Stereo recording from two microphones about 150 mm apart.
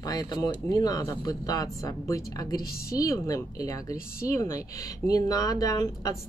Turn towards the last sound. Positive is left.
turn(degrees=25)  # may be behind; listen again after turning